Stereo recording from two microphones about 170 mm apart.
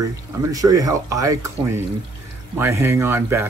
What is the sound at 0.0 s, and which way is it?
Speech, 20° right (ahead or behind).